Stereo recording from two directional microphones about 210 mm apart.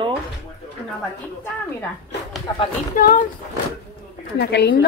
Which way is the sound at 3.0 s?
40° left (ahead or behind).